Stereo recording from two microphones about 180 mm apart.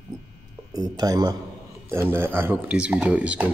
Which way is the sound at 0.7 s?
20° right (ahead or behind).